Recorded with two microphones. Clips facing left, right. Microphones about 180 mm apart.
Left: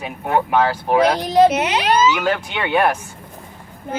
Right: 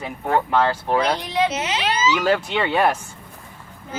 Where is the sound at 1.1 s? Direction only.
40° left (ahead or behind).